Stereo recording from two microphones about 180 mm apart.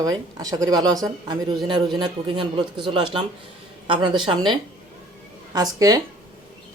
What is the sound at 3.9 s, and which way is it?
Speech, 25° right (ahead or behind).